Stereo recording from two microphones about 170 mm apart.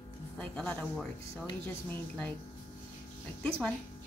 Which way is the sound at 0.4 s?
5° left (ahead or behind).